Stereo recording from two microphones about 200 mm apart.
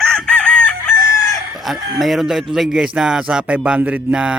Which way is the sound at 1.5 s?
Centre (ahead or behind).